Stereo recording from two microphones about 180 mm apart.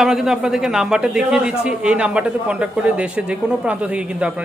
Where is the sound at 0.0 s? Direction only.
Centre (ahead or behind).